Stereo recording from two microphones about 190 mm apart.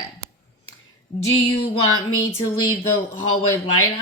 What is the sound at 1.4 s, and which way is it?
Speech, 30° left (ahead or behind).